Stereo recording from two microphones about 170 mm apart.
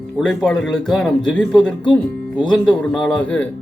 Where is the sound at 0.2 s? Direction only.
Centre (ahead or behind).